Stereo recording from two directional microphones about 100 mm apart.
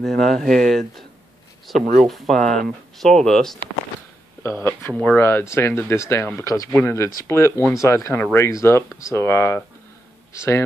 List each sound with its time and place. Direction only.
0.0 s speech: 5° left (ahead or behind)
4.4 s speech: 25° left (ahead or behind)
6.4 s speech: 35° left (ahead or behind)